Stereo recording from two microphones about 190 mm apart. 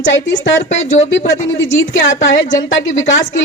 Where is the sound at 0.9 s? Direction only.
75° left (ahead or behind).